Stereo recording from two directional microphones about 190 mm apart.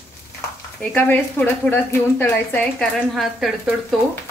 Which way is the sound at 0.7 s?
10° left (ahead or behind).